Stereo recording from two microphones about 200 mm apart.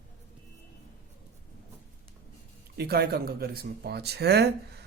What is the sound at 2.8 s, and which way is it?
Speech, 50° right (ahead or behind).